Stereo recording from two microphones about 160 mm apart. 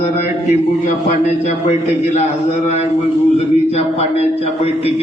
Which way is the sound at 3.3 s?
40° left (ahead or behind).